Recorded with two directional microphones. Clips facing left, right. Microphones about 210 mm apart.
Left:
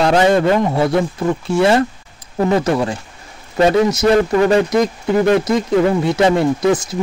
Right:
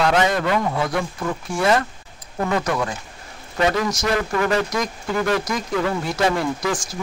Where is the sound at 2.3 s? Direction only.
30° left (ahead or behind).